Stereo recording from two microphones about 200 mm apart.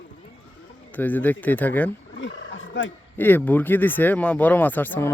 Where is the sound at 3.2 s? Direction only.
10° left (ahead or behind).